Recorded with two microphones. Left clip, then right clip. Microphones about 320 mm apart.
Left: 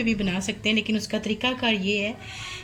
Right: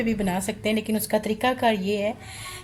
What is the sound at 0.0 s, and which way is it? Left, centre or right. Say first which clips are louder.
Speech: right 1 dB; right.